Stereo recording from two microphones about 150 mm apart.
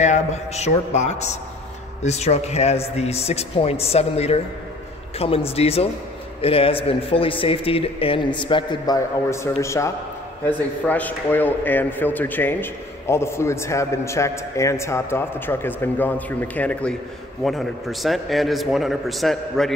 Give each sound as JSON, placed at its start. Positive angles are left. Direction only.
{"t": 0.0, "sound": "a man's voice", "side_deg": 50}